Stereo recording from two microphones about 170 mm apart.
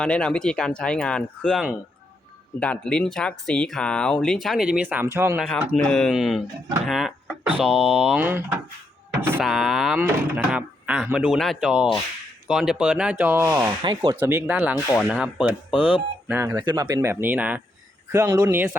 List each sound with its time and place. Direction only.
0.0 s speech: 5° left (ahead or behind); by 5.4 s 15° right (ahead or behind)
5.5 s speech: 10° left (ahead or behind)
6.8 s a sound: centre (ahead or behind)
7.6 s speech: 5° right (ahead or behind)
9.4 s speech: centre (ahead or behind)
13.5 s speech: 20° right (ahead or behind)
14.2 s speech: 15° right (ahead or behind)
18.1 s speech: 20° right (ahead or behind)